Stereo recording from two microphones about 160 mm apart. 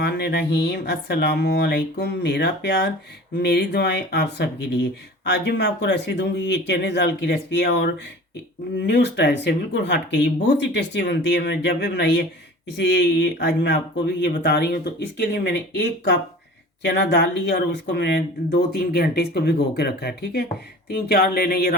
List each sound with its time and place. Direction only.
0.0 s speech: 90° left; by 21.8 s 75° left (ahead or behind)